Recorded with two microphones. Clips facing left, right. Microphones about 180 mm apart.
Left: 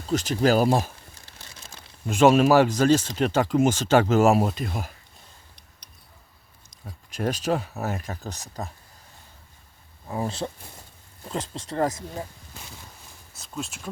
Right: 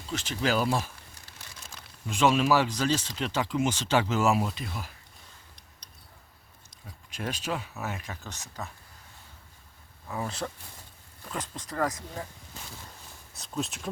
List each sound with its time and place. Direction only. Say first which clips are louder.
0.1 s speech: left 8 dB; 40° left (ahead or behind)
2.0 s speech: left 7 dB; 45° left (ahead or behind)
6.7 s speech: left 6 dB; 40° left (ahead or behind)
10.1 s speech: left 5 dB; 30° left (ahead or behind)
13.3 s speech: right 1 dB; centre (ahead or behind)